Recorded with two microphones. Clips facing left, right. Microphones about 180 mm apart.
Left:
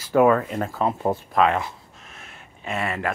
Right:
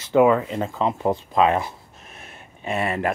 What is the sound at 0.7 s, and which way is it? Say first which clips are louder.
Speech: right 1 dB; 5° left (ahead or behind).